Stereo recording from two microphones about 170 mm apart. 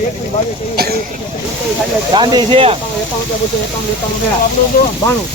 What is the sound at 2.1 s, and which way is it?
Speech, 25° right (ahead or behind).